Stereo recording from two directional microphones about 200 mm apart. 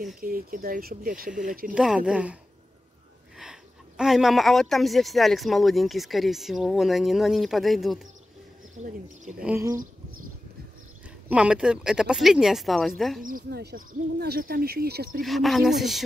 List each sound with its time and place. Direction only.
0.2 s speech: 45° right (ahead or behind)
1.7 s speech: 5° right (ahead or behind)
3.3 s speech: 5° right (ahead or behind)
8.7 s speech: 35° right (ahead or behind)
9.4 s speech: 5° right (ahead or behind)
11.2 s speech: 5° right (ahead or behind)
13.2 s speech: 50° right (ahead or behind)
15.2 s speech: centre (ahead or behind)